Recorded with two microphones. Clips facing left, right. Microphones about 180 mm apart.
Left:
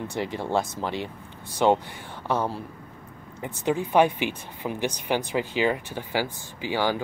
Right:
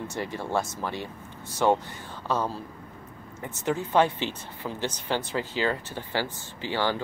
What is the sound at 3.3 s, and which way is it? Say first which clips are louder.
Speech: left 3 dB; 15° left (ahead or behind).